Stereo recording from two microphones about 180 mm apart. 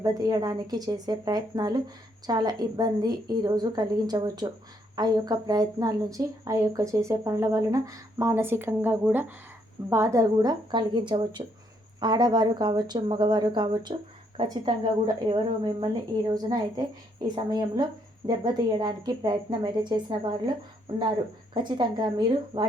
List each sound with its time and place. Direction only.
0.0 s a woman's voice: 20° right (ahead or behind)
21.5 s a woman's voice: 25° right (ahead or behind)